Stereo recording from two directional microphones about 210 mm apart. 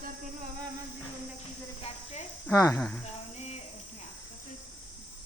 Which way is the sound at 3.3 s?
30° left (ahead or behind).